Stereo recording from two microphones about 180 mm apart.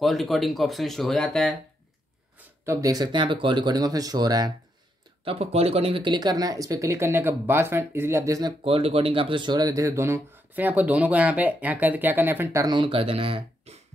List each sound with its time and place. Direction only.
0.0 s speech: centre (ahead or behind)
2.3 s speech: 15° right (ahead or behind)
5.2 s speech: 30° right (ahead or behind)